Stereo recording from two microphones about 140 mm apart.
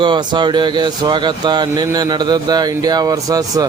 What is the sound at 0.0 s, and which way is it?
Speech, 35° right (ahead or behind).